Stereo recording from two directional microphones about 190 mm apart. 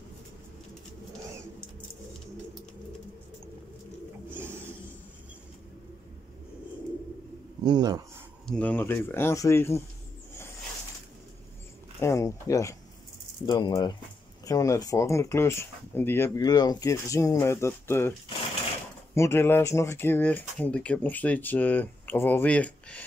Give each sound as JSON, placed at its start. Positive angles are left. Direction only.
{"t": 4.3, "sound": "a sound", "side_deg": -10}
{"t": 7.6, "sound": "speech", "side_deg": -20}
{"t": 8.5, "sound": "speech", "side_deg": 10}
{"t": 12.0, "sound": "speech", "side_deg": 15}
{"t": 19.1, "sound": "speech", "side_deg": 15}